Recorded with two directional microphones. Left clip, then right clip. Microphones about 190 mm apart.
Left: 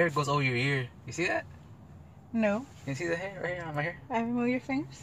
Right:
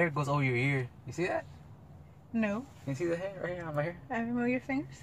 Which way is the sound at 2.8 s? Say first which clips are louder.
Right 1 dB; 10° right (ahead or behind).